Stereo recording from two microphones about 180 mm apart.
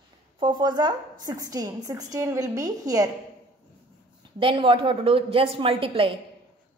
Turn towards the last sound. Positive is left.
turn(degrees=-30)  # may be behind; listen again after turning